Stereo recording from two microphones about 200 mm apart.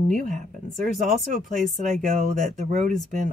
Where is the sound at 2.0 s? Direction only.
40° right (ahead or behind).